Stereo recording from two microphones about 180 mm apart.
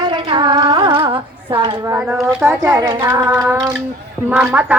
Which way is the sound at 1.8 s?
15° right (ahead or behind).